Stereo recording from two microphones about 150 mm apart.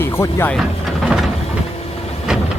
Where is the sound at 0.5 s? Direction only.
Centre (ahead or behind).